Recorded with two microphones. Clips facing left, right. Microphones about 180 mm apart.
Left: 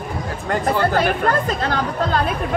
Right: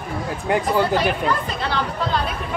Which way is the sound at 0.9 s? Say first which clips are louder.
Left 2 dB; 50° left (ahead or behind).